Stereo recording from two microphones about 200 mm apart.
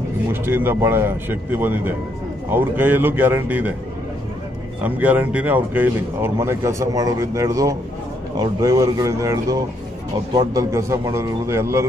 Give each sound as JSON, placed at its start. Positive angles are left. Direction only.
{"t": 0.3, "sound": "speech", "side_deg": -10}
{"t": 4.8, "sound": "speech", "side_deg": -10}